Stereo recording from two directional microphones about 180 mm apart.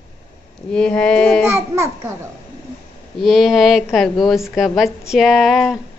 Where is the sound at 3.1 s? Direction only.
Centre (ahead or behind).